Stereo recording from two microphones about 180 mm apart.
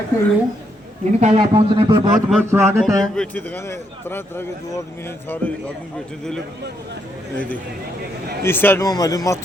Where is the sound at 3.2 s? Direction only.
10° left (ahead or behind).